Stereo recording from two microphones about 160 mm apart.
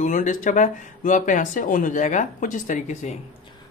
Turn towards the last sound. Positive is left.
turn(degrees=50)  # may be behind; listen again after turning